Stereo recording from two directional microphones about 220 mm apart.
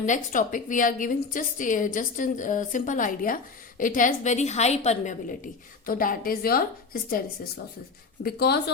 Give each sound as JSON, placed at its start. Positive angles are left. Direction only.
{"t": 0.0, "sound": "a woman's voice", "side_deg": 35}
{"t": 8.2, "sound": "speech", "side_deg": 45}